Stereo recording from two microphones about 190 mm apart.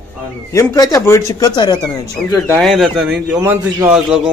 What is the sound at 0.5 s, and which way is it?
Speech, 15° left (ahead or behind).